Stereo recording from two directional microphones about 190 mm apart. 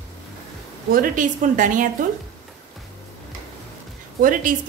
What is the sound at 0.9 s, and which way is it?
Speech, 45° right (ahead or behind).